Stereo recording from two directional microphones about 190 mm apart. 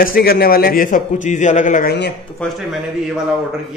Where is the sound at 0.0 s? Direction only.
50° left (ahead or behind).